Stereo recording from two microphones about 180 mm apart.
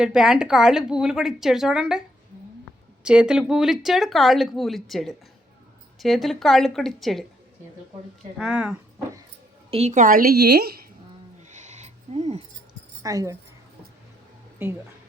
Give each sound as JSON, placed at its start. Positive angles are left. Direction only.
{"t": 0.0, "sound": "speech", "side_deg": -5}
{"t": 8.4, "sound": "speech", "side_deg": -5}
{"t": 9.6, "sound": "a woman's voice", "side_deg": -35}
{"t": 11.4, "sound": "owl", "side_deg": -40}
{"t": 13.0, "sound": "speech", "side_deg": -20}